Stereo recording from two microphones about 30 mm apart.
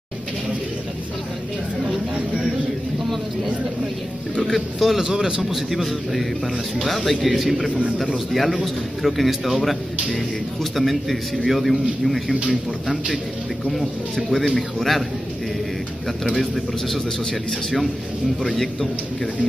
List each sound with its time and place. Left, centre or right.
4.6 s speech: centre
5.0 s speech: right
5.4 s speech: centre
16.3 s speech: centre
17.3 s speech: centre